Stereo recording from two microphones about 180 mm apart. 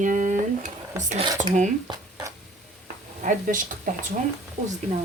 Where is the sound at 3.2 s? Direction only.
45° right (ahead or behind).